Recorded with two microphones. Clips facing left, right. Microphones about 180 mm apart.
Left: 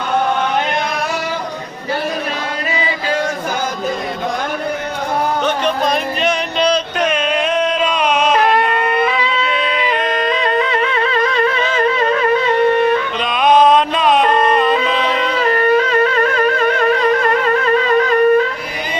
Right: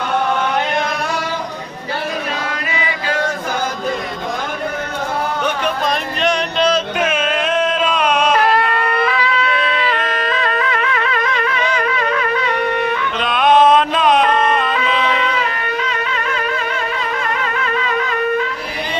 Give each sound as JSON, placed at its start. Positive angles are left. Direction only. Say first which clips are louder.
{"t": 6.2, "sound": "music", "louder": "right 1 dB", "side_deg": 0}
{"t": 8.5, "sound": "a sound", "louder": "left 2 dB", "side_deg": 20}
{"t": 11.3, "sound": "music", "louder": "left 3 dB", "side_deg": 30}
{"t": 13.2, "sound": "music", "louder": "even", "side_deg": 0}
{"t": 14.7, "sound": "music", "louder": "left 2 dB", "side_deg": 35}